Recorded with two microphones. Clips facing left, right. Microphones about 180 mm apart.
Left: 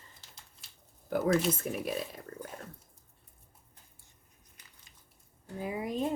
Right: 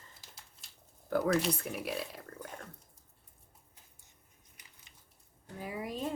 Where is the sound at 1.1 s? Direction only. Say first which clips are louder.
Left 1 dB; 20° left (ahead or behind).